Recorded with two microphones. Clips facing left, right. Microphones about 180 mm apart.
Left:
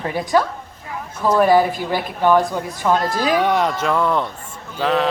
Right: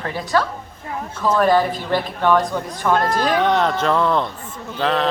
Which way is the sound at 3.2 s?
10° left (ahead or behind).